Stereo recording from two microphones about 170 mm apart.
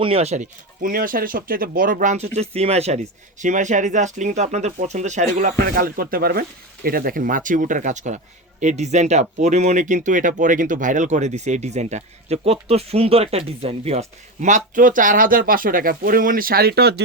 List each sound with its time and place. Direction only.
0.0 s speech: 35° right (ahead or behind)
0.8 s speech: 55° right (ahead or behind); by 14.0 s 35° right (ahead or behind)
14.4 s speech: 50° right (ahead or behind); by 16.9 s 65° right (ahead or behind)